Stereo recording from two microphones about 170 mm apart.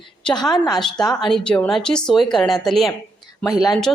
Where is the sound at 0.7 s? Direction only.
Centre (ahead or behind).